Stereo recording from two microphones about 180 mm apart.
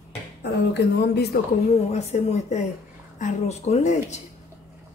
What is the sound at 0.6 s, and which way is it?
Speech, 65° left (ahead or behind).